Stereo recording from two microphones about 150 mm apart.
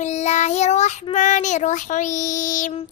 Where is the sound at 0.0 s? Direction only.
50° left (ahead or behind).